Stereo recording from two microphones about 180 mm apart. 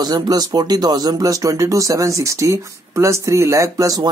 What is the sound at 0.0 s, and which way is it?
Speech, 25° right (ahead or behind).